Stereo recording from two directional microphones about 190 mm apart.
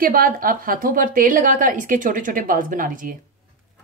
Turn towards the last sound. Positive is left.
turn(degrees=-45)  # may be behind; listen again after turning